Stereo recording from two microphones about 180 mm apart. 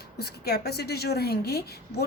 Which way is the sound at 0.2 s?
60° left (ahead or behind).